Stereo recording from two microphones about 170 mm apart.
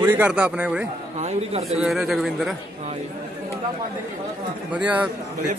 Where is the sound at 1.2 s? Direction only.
40° right (ahead or behind).